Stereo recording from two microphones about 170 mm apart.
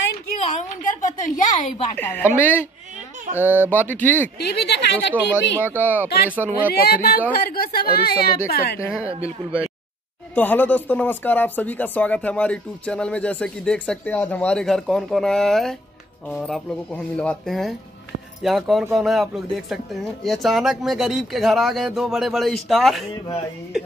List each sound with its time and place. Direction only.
0.6 s a woman's voice: 50° left (ahead or behind)
2.0 s speech: 10° left (ahead or behind)
3.4 s speech: 10° right (ahead or behind)
3.7 s speech: 10° left (ahead or behind)
4.4 s speech: 75° left (ahead or behind)
5.7 s speech: 10° right (ahead or behind)
6.7 s speech: 65° left (ahead or behind)
8.7 s speech: 15° left (ahead or behind); by 23.0 s centre (ahead or behind)